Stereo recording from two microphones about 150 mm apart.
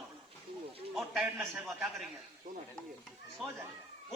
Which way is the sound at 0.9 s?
Centre (ahead or behind).